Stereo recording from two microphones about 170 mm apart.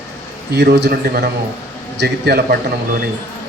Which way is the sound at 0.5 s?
85° right.